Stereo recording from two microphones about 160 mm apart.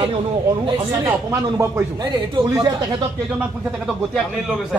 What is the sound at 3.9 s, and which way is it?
Speech, centre (ahead or behind).